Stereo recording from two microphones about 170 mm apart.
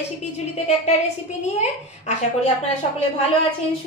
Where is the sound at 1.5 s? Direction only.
40° left (ahead or behind).